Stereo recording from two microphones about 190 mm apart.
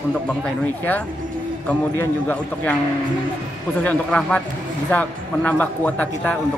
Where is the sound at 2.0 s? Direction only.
10° left (ahead or behind).